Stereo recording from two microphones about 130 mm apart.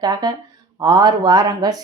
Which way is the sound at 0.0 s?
30° right (ahead or behind).